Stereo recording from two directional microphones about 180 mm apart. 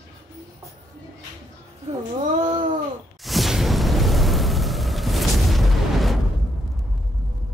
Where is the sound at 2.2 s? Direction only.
45° right (ahead or behind).